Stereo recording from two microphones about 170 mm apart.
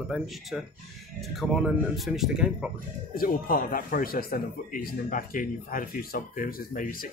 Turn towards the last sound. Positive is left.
turn(degrees=55)  # may be behind; listen again after turning